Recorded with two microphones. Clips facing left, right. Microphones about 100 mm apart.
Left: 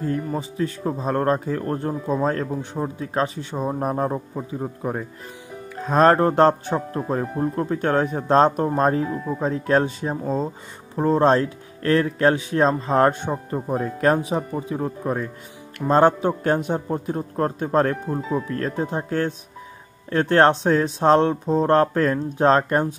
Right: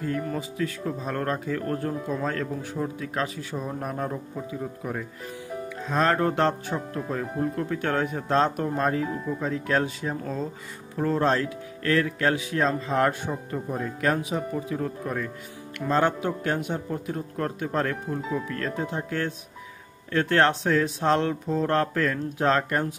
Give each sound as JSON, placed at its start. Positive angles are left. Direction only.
{"t": 0.4, "sound": "speech", "side_deg": 30}
{"t": 5.8, "sound": "speech", "side_deg": 45}